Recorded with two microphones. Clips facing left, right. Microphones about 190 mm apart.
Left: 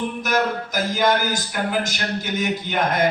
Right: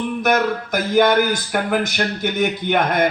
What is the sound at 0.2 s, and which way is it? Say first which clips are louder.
A man's voice: right 5 dB; 60° right (ahead or behind).